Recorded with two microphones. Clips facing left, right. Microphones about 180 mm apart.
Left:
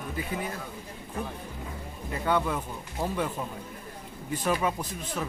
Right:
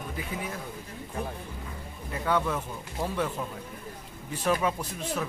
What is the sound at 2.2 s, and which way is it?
Speech, 10° left (ahead or behind).